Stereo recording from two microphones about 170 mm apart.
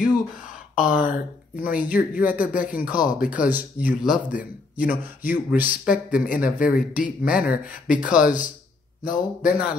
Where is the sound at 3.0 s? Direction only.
50° left (ahead or behind).